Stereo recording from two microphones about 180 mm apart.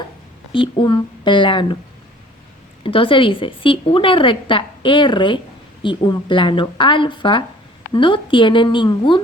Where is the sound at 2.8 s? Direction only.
30° left (ahead or behind).